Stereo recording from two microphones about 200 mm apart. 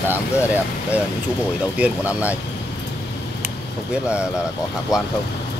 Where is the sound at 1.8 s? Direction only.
5° right (ahead or behind).